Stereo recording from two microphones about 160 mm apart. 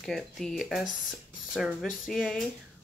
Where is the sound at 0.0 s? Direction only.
Centre (ahead or behind).